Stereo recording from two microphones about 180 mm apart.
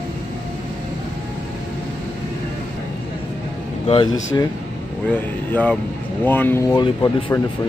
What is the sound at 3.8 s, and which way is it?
Speech, 30° left (ahead or behind).